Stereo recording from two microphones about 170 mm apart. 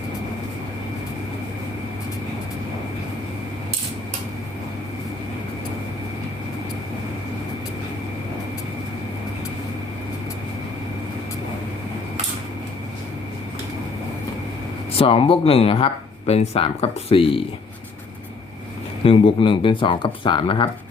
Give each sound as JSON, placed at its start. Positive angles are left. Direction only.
{"t": 14.9, "sound": "speech", "side_deg": 35}
{"t": 19.0, "sound": "speech", "side_deg": 30}